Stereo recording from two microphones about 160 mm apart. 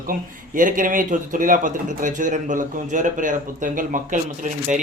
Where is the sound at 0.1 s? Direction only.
60° right (ahead or behind).